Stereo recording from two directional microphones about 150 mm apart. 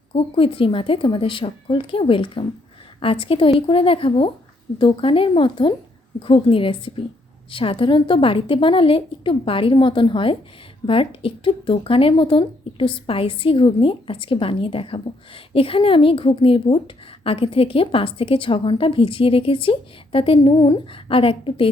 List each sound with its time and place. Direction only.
0.1 s a woman's voice: 35° left (ahead or behind)